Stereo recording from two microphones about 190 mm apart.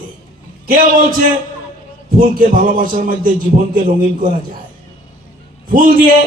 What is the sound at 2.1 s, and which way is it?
A man's voice, 45° right (ahead or behind).